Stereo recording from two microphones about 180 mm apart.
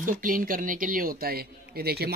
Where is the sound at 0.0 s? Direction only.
50° right (ahead or behind).